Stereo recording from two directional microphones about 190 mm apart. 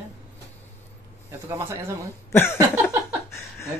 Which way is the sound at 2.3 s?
15° left (ahead or behind).